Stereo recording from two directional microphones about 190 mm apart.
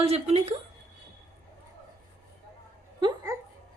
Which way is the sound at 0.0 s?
35° right (ahead or behind).